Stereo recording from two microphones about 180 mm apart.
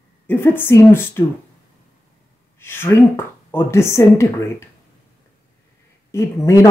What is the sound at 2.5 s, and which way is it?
Speech, 15° left (ahead or behind).